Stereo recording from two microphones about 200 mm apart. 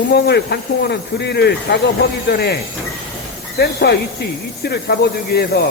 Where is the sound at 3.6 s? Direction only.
55° left (ahead or behind).